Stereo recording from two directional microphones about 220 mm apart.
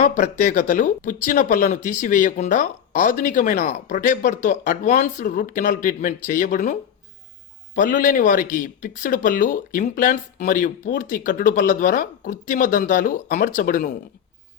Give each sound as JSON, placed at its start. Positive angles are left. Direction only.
{"t": 0.0, "sound": "speech", "side_deg": 35}
{"t": 7.8, "sound": "speech", "side_deg": 40}